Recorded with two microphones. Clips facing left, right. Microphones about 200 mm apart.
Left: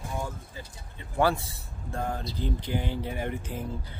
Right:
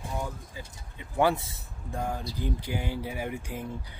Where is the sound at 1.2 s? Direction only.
20° right (ahead or behind).